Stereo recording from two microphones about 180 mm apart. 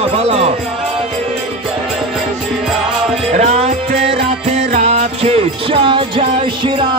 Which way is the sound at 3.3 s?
40° right (ahead or behind).